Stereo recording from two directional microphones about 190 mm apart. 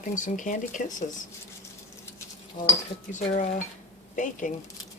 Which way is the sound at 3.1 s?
40° left (ahead or behind).